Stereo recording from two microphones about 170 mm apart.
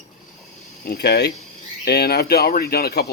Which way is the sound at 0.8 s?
70° left (ahead or behind).